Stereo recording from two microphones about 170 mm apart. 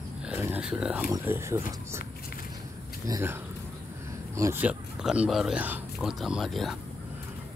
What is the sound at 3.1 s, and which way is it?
Speech, 15° right (ahead or behind).